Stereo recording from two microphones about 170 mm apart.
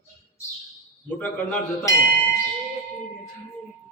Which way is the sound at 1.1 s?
5° left (ahead or behind).